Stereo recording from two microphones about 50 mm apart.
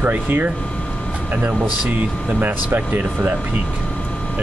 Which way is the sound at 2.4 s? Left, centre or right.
Right.